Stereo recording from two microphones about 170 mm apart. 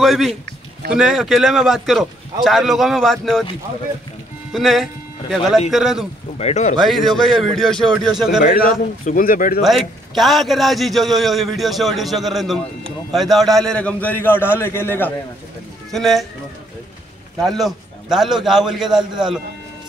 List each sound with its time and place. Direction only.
0.0 s a man's voice: centre (ahead or behind)
4.5 s a man's voice: centre (ahead or behind)
6.3 s speech: 40° left (ahead or behind)
6.8 s a man's voice: centre (ahead or behind)
8.5 s a man's voice: 55° left (ahead or behind)
9.6 s a man's voice: centre (ahead or behind)
15.9 s a man's voice: centre (ahead or behind)
17.4 s a man's voice: centre (ahead or behind)